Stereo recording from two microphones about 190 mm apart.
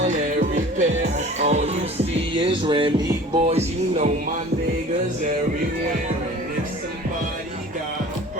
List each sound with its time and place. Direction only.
0.0 s music: 40° right (ahead or behind)
1.1 s speech: 35° right (ahead or behind)